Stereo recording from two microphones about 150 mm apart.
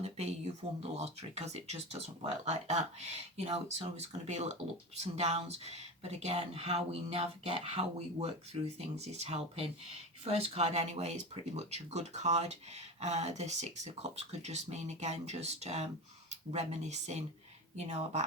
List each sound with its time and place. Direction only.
0.0 s speech: 45° right (ahead or behind)